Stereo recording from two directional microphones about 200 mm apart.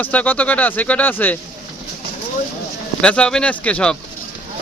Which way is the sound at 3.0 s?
5° left (ahead or behind).